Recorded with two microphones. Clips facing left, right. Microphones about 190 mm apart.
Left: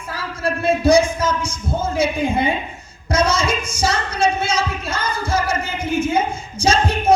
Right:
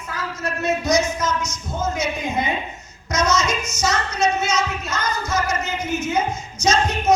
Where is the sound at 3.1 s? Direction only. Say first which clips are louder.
Left 2 dB; 30° left (ahead or behind).